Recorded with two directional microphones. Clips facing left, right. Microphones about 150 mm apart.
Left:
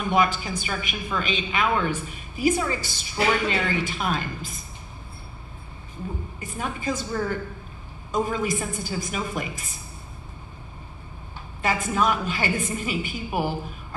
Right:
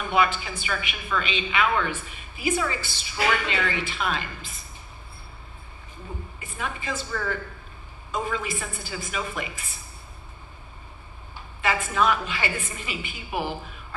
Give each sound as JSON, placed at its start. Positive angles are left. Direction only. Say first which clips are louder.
{"t": 0.1, "sound": "speech", "louder": "left 1 dB", "side_deg": 40}
{"t": 6.4, "sound": "speech", "louder": "left 4 dB", "side_deg": 40}
{"t": 11.6, "sound": "speech", "louder": "even", "side_deg": 40}